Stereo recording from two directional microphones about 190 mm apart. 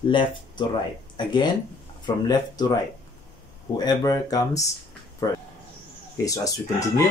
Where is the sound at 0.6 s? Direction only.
25° left (ahead or behind).